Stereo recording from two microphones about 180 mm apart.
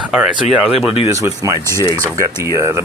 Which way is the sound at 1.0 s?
15° right (ahead or behind).